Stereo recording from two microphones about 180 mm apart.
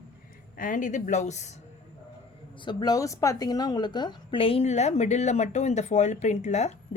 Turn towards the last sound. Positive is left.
turn(degrees=40)  # may be behind; listen again after turning